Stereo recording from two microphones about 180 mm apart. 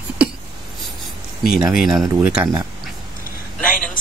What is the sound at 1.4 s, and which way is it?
Speech, 5° right (ahead or behind).